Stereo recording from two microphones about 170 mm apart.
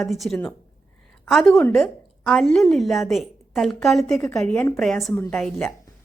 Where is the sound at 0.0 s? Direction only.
Centre (ahead or behind).